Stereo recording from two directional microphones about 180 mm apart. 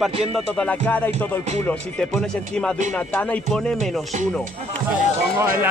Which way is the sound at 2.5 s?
5° left (ahead or behind).